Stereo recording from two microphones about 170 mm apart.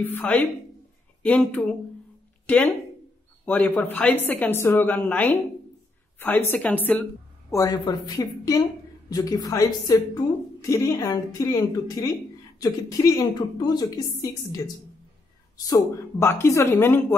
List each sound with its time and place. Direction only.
0.0 s a woman's voice: 10° left (ahead or behind)
7.5 s a woman's voice: 20° left (ahead or behind)
15.5 s a woman's voice: 20° left (ahead or behind)